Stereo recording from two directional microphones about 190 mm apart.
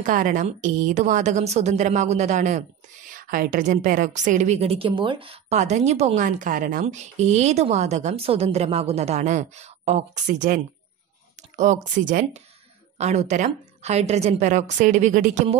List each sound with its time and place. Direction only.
0.0 s a woman's voice: 40° right (ahead or behind)